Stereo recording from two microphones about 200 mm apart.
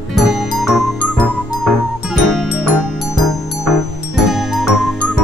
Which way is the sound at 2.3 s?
Centre (ahead or behind).